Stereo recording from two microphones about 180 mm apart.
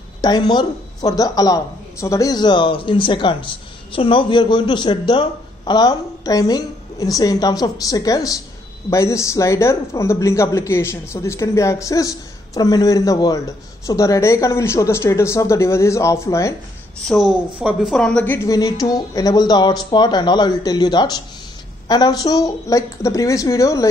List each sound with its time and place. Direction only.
0.2 s speech: 25° left (ahead or behind)
17.0 s speech: centre (ahead or behind); by 23.9 s 15° left (ahead or behind)